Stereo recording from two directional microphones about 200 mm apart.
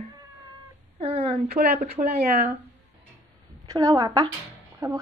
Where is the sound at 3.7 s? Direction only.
20° right (ahead or behind).